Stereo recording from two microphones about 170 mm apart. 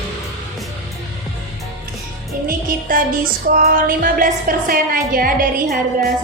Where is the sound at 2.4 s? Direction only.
55° right (ahead or behind).